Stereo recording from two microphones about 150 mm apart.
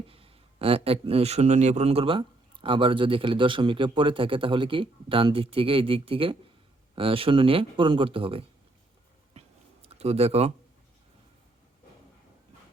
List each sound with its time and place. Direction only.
0.1 s speech: 40° right (ahead or behind)
9.8 s speech: 45° right (ahead or behind)